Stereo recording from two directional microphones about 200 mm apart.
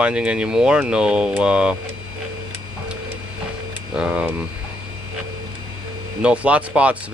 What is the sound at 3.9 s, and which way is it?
Speech, 5° right (ahead or behind).